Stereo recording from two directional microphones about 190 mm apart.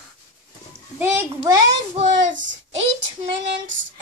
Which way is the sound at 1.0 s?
10° right (ahead or behind).